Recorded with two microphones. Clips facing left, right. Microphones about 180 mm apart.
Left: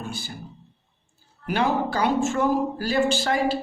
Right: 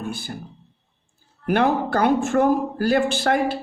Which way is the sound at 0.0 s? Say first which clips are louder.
Right 4 dB; 55° right (ahead or behind).